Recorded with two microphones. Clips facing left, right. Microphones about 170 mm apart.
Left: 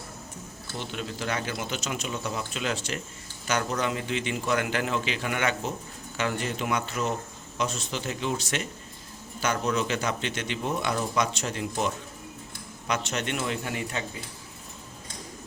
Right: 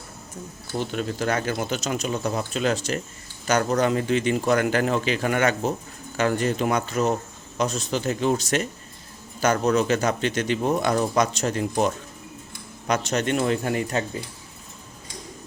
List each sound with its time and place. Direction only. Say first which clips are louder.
0.8 s speech: right 7 dB; 45° right (ahead or behind)
12.9 s speech: right 6 dB; 40° right (ahead or behind)